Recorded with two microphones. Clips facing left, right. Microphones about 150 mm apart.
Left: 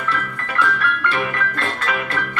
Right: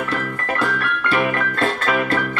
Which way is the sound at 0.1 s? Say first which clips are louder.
Right 2 dB; 40° right (ahead or behind).